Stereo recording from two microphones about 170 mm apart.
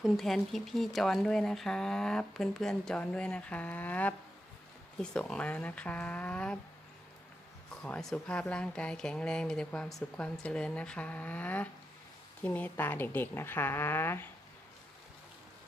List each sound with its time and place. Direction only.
0.0 s a woman's voice: centre (ahead or behind)
7.8 s a woman's voice: 5° left (ahead or behind)